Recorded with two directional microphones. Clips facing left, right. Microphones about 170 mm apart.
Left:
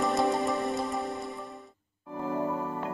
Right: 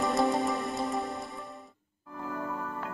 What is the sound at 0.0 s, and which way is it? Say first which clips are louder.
Music: even; centre (ahead or behind).